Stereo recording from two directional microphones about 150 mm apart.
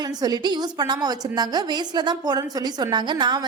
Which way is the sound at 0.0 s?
25° right (ahead or behind).